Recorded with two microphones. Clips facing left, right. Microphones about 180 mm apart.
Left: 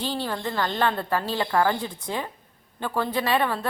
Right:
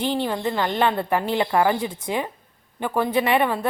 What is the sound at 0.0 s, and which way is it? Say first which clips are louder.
A woman's voice: right 5 dB; 20° right (ahead or behind).